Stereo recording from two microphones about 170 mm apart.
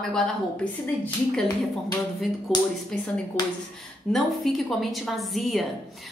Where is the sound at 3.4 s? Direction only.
25° left (ahead or behind).